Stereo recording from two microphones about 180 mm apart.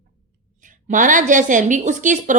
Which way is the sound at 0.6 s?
45° right (ahead or behind).